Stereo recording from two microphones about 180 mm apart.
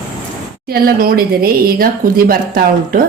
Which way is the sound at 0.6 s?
55° right (ahead or behind).